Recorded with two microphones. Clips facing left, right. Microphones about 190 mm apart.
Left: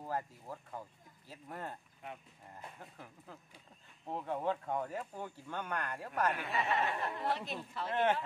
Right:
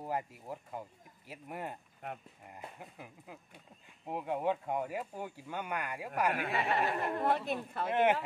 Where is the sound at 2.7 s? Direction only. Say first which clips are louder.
Right 3 dB; 10° right (ahead or behind).